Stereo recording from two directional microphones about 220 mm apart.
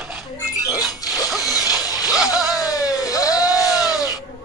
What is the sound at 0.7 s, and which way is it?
Music, 15° left (ahead or behind).